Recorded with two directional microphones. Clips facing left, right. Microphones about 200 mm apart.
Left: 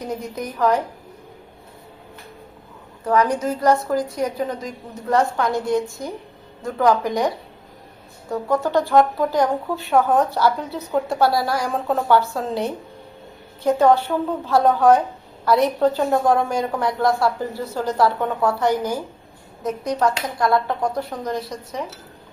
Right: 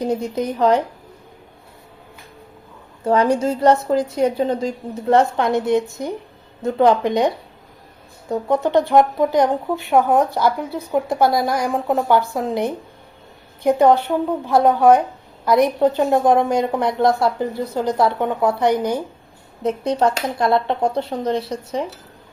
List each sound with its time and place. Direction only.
0.0 s a woman's voice: 30° right (ahead or behind)
3.0 s a woman's voice: 30° right (ahead or behind)